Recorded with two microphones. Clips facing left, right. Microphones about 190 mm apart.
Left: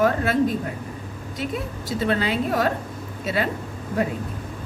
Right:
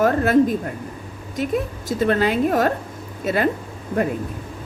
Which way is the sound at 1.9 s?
50° right (ahead or behind).